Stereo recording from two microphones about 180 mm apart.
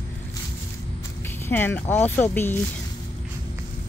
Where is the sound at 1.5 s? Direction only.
10° left (ahead or behind).